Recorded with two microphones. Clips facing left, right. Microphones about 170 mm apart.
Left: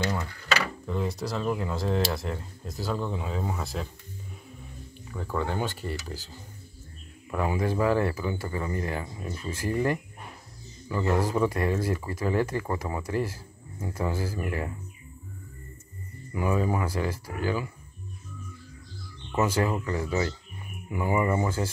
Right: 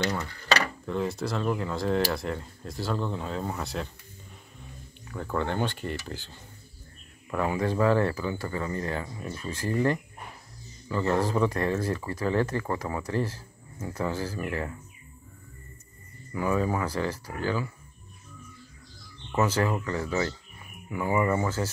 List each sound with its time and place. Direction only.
0.8 s speech: centre (ahead or behind)
5.0 s speech: 5° left (ahead or behind)
7.2 s speech: 10° left (ahead or behind)
16.3 s speech: 15° left (ahead or behind)
19.3 s speech: 15° left (ahead or behind)